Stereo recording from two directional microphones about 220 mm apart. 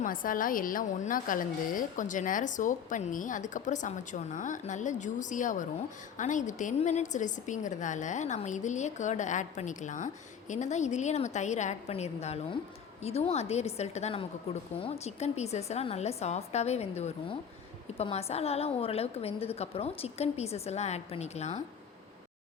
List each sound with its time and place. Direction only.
0.0 s a woman's voice: 40° left (ahead or behind)